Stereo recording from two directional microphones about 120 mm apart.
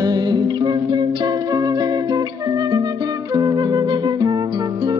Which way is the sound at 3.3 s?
35° right (ahead or behind).